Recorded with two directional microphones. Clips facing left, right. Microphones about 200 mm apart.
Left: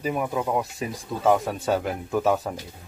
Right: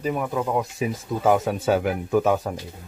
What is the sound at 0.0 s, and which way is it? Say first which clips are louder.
Speech: right 1 dB; 5° left (ahead or behind).